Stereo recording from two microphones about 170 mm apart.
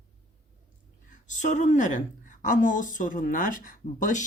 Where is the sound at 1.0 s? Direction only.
45° left (ahead or behind).